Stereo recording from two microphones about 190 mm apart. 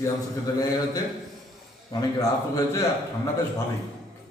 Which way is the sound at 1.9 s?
20° left (ahead or behind).